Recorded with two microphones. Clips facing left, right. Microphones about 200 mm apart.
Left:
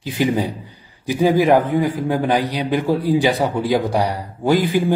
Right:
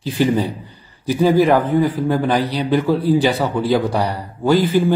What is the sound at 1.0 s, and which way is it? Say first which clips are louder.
A man's voice: right 1 dB; 15° left (ahead or behind).